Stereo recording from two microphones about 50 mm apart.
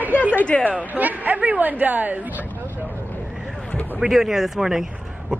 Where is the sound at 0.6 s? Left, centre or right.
Right.